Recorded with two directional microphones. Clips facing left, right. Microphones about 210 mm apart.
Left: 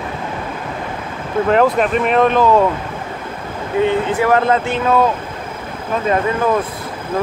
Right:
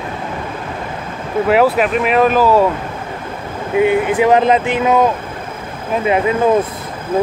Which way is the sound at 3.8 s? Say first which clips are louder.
Right 3 dB; 15° right (ahead or behind).